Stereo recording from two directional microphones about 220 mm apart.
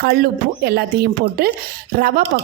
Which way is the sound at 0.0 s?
45° right (ahead or behind).